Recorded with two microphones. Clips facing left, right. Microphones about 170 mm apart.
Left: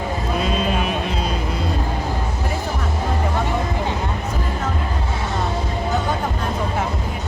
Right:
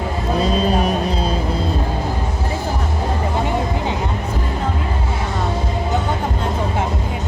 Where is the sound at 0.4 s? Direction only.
40° right (ahead or behind).